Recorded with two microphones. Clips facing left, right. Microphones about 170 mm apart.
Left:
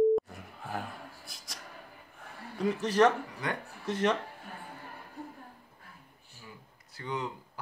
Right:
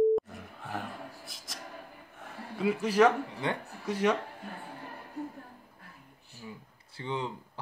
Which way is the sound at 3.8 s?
10° right (ahead or behind).